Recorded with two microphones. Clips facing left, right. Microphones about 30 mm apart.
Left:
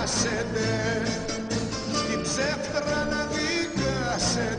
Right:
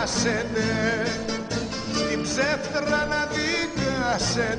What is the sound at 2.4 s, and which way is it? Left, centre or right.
Music, right.